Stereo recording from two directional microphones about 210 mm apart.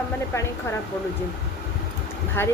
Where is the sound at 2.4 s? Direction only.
10° left (ahead or behind).